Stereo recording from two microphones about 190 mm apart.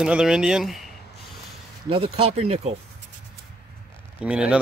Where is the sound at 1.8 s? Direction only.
30° right (ahead or behind).